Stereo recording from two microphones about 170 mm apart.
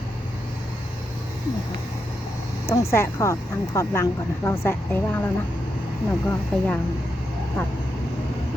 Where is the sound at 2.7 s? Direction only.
15° left (ahead or behind).